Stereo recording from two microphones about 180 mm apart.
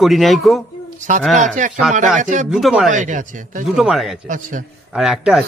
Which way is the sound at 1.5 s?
45° right (ahead or behind).